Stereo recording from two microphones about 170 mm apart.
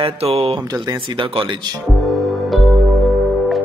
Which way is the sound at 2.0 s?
Centre (ahead or behind).